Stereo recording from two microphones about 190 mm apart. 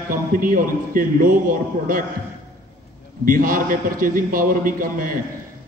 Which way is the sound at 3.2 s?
45° right (ahead or behind).